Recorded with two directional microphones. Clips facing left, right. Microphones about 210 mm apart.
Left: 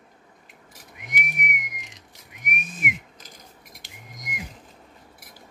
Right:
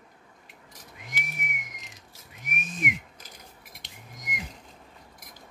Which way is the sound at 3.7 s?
5° left (ahead or behind).